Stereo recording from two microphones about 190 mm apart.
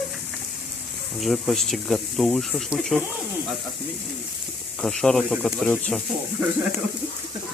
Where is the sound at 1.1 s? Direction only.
Centre (ahead or behind).